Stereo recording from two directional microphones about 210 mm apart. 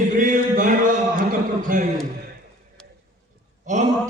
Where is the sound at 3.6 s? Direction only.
35° right (ahead or behind).